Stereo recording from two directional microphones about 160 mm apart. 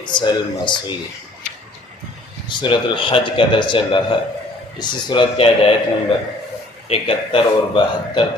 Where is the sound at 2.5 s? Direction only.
30° left (ahead or behind).